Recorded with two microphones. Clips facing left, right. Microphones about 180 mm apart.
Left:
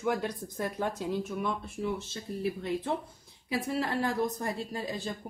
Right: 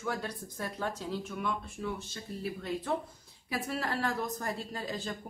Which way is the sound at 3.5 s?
20° left (ahead or behind).